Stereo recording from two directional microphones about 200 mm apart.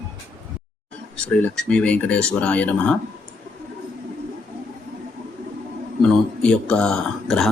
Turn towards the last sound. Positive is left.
turn(degrees=0)  # may be behind; listen again after turning